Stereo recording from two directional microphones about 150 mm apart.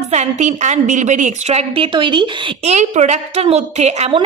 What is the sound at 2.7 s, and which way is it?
A woman's voice, 50° right (ahead or behind).